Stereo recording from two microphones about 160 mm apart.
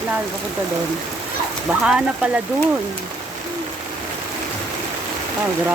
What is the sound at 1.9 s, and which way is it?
Speech, 5° right (ahead or behind).